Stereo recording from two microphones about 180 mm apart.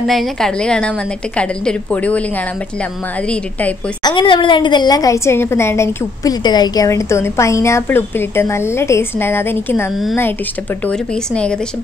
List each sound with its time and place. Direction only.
0.0 s a woman's voice: centre (ahead or behind)
4.0 s a woman's voice: 25° left (ahead or behind)
10.9 s a woman's voice: 5° left (ahead or behind)